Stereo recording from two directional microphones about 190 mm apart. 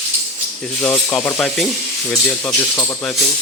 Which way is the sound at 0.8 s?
10° left (ahead or behind).